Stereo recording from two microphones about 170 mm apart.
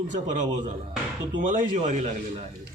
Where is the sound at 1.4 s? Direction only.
50° right (ahead or behind).